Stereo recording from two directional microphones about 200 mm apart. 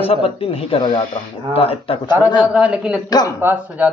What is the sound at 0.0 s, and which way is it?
Speech, 30° left (ahead or behind).